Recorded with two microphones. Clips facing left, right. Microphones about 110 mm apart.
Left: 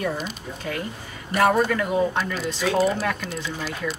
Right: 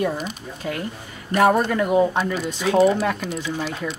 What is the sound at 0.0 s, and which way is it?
A woman's voice, 15° right (ahead or behind).